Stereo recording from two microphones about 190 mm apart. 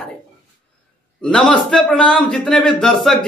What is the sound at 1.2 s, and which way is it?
A man's voice, 5° left (ahead or behind).